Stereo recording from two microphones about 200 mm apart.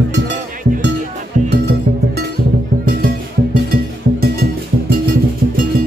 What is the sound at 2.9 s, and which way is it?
Music, 50° right (ahead or behind).